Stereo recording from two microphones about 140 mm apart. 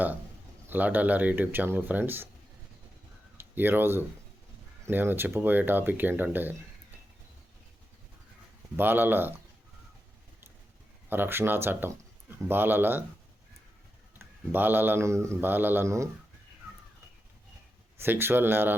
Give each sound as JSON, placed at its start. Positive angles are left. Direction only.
{"t": 0.7, "sound": "speech", "side_deg": -10}
{"t": 3.3, "sound": "speech", "side_deg": -15}
{"t": 8.7, "sound": "speech", "side_deg": -15}
{"t": 11.1, "sound": "speech", "side_deg": -15}
{"t": 14.5, "sound": "speech", "side_deg": -15}
{"t": 17.9, "sound": "speech", "side_deg": -15}